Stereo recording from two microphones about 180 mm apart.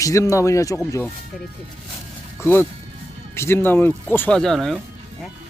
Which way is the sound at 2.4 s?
15° left (ahead or behind).